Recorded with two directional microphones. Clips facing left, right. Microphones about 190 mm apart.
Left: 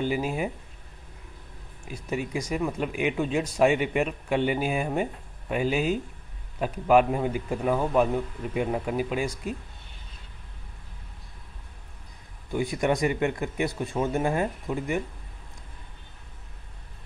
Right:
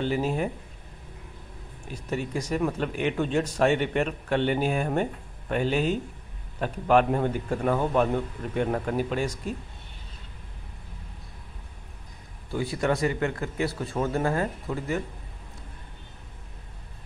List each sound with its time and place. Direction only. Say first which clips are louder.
0.0 s speech: right 1 dB; 10° left (ahead or behind)
1.9 s speech: even; 10° left (ahead or behind)
12.4 s speech: left 1 dB; 20° left (ahead or behind)